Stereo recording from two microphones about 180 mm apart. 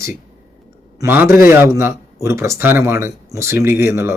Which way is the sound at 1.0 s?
10° right (ahead or behind).